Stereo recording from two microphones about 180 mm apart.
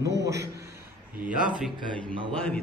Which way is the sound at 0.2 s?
15° right (ahead or behind).